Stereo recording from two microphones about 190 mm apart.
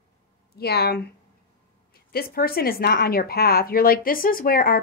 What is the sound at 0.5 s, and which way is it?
Speech, 55° left (ahead or behind).